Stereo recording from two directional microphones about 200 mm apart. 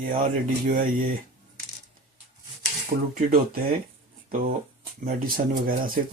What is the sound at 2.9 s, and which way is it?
Speech, 40° right (ahead or behind).